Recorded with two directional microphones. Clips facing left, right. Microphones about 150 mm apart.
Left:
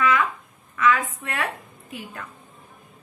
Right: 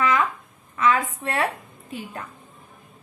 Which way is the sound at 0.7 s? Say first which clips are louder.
Even; 30° right (ahead or behind).